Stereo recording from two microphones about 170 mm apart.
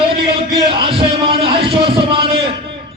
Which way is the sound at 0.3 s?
30° right (ahead or behind).